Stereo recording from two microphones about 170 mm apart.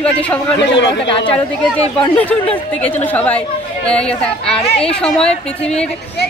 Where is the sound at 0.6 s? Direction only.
90° left.